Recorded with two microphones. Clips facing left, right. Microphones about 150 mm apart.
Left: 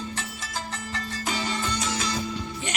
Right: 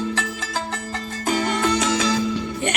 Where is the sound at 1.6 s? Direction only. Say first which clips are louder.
Right 9 dB; 80° right.